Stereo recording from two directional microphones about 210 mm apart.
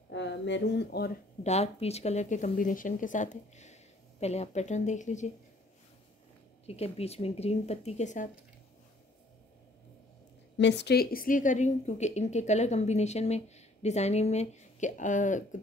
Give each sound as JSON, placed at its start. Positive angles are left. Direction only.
{"t": 0.1, "sound": "speech", "side_deg": 60}
{"t": 1.4, "sound": "a woman's voice", "side_deg": 30}
{"t": 6.6, "sound": "a woman's voice", "side_deg": 30}
{"t": 10.6, "sound": "a woman's voice", "side_deg": 55}